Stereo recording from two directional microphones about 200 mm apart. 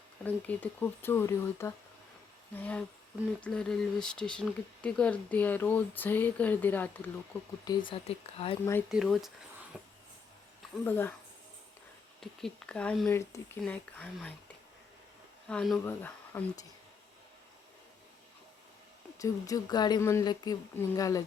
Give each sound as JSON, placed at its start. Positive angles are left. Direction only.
{"t": 0.2, "sound": "speech", "side_deg": 5}
{"t": 7.6, "sound": "speech", "side_deg": 20}
{"t": 8.9, "sound": "speech", "side_deg": 0}
{"t": 9.7, "sound": "a sound", "side_deg": -5}
{"t": 10.8, "sound": "speech", "side_deg": 10}
{"t": 12.2, "sound": "speech", "side_deg": 0}
{"t": 19.2, "sound": "speech", "side_deg": 15}